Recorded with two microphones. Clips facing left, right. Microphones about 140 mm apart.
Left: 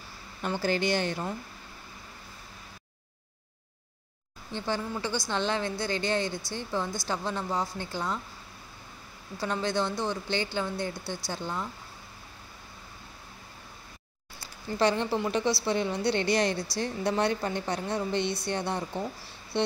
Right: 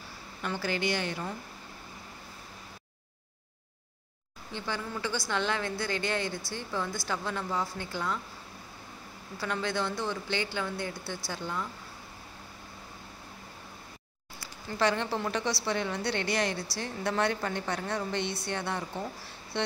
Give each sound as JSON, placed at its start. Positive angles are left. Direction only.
{"t": 0.5, "sound": "a woman's voice", "side_deg": 30}
{"t": 4.6, "sound": "a woman's voice", "side_deg": 30}
{"t": 9.4, "sound": "speech", "side_deg": 30}
{"t": 14.8, "sound": "a woman's voice", "side_deg": 20}